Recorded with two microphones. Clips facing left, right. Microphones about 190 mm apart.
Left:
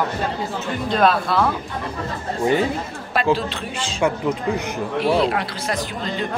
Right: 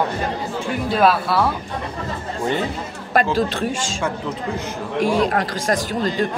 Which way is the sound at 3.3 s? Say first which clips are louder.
Right 6 dB; 45° right (ahead or behind).